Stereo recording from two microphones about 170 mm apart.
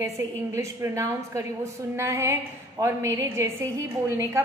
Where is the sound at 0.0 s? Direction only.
20° right (ahead or behind).